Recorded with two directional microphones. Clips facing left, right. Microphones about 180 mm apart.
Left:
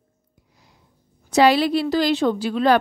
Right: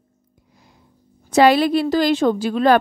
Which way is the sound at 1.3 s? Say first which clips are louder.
Right 2 dB; 50° right (ahead or behind).